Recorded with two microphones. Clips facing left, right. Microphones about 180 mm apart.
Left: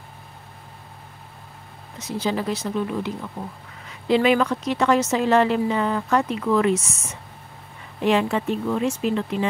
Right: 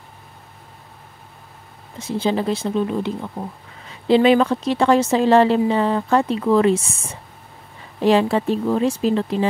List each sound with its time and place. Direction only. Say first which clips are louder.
2.0 s a woman's voice: right 4 dB; 30° right (ahead or behind)